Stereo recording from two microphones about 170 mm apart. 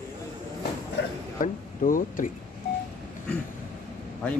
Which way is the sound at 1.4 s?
55° left (ahead or behind).